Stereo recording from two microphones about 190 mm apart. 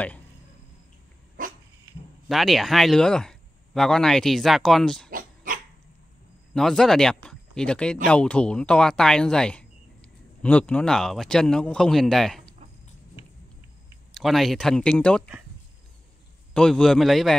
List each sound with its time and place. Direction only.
1.4 s dog: 45° right (ahead or behind)
2.2 s speech: centre (ahead or behind)
5.1 s dog: 45° right (ahead or behind)
6.5 s speech: 5° left (ahead or behind)
14.1 s speech: centre (ahead or behind)
16.5 s speech: 5° left (ahead or behind)